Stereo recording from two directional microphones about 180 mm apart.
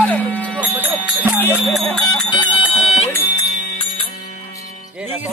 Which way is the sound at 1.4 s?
10° left (ahead or behind).